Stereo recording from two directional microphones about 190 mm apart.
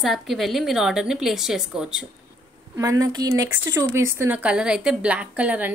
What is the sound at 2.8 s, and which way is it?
A woman's voice, 20° right (ahead or behind).